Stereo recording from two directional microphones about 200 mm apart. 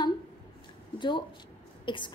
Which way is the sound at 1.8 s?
25° left (ahead or behind).